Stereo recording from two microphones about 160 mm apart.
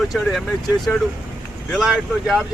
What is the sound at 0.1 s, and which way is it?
Speech, centre (ahead or behind).